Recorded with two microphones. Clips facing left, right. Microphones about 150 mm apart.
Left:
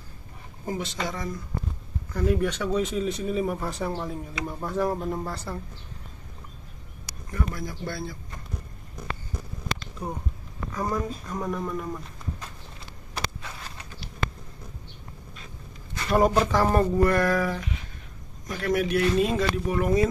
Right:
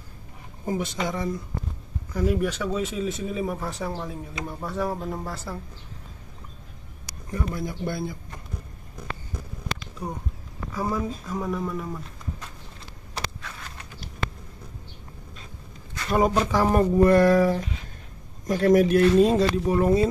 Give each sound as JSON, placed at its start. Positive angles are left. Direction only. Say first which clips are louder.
{"t": 0.7, "sound": "speech", "louder": "right 3 dB", "side_deg": -20}
{"t": 2.1, "sound": "speech", "louder": "even", "side_deg": -10}
{"t": 7.3, "sound": "speech", "louder": "right 2 dB", "side_deg": -20}
{"t": 10.7, "sound": "speech", "louder": "right 1 dB", "side_deg": -5}
{"t": 16.1, "sound": "speech", "louder": "left 1 dB", "side_deg": 0}
{"t": 16.5, "sound": "speech", "louder": "right 2 dB", "side_deg": -10}
{"t": 17.0, "sound": "speech", "louder": "right 5 dB", "side_deg": -25}